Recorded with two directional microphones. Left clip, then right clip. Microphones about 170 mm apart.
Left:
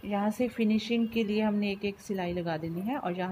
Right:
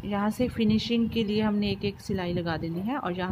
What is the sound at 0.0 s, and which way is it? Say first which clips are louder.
A woman's voice: right 2 dB; 20° right (ahead or behind).